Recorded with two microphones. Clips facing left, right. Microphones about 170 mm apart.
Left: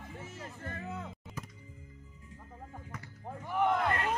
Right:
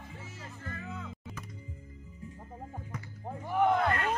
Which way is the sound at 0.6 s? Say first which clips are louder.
Even; 30° left (ahead or behind).